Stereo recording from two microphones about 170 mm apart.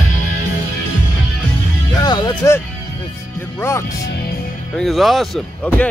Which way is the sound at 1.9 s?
25° left (ahead or behind).